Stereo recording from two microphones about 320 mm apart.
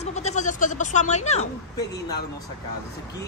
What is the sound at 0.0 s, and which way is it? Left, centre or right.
Speech, left.